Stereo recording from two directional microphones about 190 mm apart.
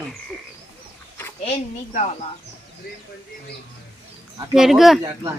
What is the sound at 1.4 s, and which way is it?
Speech, 35° left (ahead or behind).